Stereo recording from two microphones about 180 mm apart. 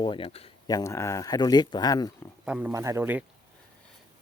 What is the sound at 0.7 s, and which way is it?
Speech, 20° left (ahead or behind).